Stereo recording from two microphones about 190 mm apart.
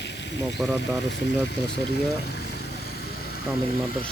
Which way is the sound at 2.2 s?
60° left (ahead or behind).